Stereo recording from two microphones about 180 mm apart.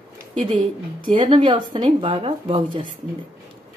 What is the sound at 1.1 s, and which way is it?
Speech, 25° right (ahead or behind).